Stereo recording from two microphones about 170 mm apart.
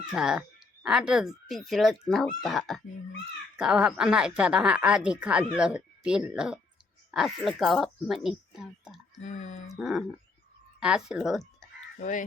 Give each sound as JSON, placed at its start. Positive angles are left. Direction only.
{"t": 0.0, "sound": "speech", "side_deg": -5}
{"t": 9.1, "sound": "speech", "side_deg": 45}
{"t": 9.6, "sound": "speech", "side_deg": 0}
{"t": 11.9, "sound": "speech", "side_deg": 50}